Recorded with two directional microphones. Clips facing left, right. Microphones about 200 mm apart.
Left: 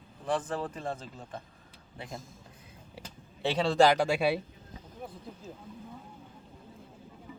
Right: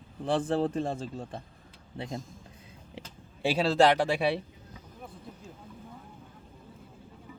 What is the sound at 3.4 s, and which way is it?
Speech, 10° right (ahead or behind).